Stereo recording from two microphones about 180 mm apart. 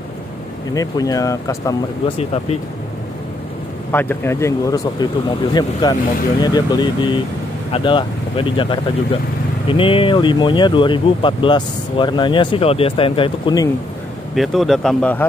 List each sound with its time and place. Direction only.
0.7 s speech: 20° left (ahead or behind)
2.1 s speech: 35° left (ahead or behind)
3.9 s speech: 10° left (ahead or behind); by 13.7 s 25° left (ahead or behind)
14.3 s speech: centre (ahead or behind)